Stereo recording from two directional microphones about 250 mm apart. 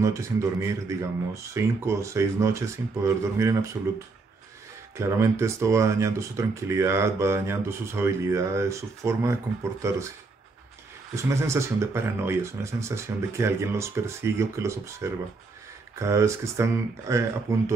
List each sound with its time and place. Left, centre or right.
0.0 s speech: centre
4.9 s speech: centre
11.1 s speech: centre